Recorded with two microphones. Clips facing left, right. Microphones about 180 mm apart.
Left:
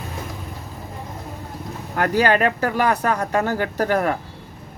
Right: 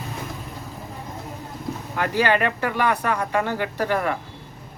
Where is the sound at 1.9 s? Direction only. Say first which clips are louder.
Left 3 dB; 45° left (ahead or behind).